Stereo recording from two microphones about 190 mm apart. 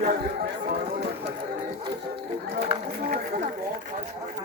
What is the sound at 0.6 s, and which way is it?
Speech, 45° right (ahead or behind).